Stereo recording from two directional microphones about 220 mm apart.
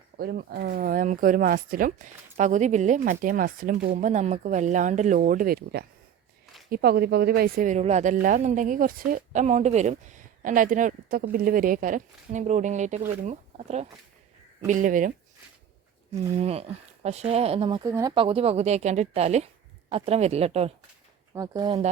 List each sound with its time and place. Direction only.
0.2 s speech: 45° right (ahead or behind)
16.3 s speech: 30° right (ahead or behind)
21.3 s speech: 15° right (ahead or behind)